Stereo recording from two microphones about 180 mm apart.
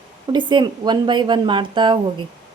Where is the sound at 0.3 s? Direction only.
25° right (ahead or behind).